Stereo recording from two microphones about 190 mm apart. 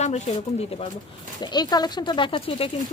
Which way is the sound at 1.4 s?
20° left (ahead or behind).